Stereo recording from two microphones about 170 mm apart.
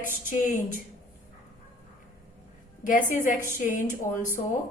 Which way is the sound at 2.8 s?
50° left (ahead or behind).